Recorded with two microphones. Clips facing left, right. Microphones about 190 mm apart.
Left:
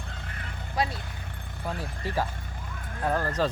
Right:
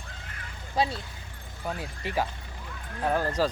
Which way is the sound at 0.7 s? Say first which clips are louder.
Right 2 dB; 25° right (ahead or behind).